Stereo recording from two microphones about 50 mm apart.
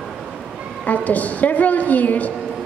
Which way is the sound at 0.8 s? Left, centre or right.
Left.